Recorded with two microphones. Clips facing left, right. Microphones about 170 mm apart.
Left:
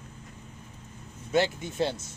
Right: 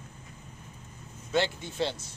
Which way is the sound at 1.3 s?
20° left (ahead or behind).